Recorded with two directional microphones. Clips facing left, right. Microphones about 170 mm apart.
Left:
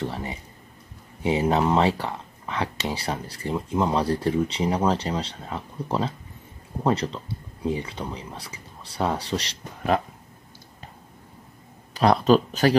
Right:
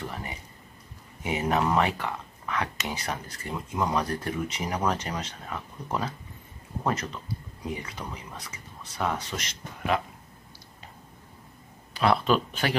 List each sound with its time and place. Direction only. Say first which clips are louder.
0.0 s a sound: left 6 dB; 30° left (ahead or behind)
1.2 s speech: left 5 dB; 30° left (ahead or behind)
11.9 s speech: left 5 dB; 40° left (ahead or behind)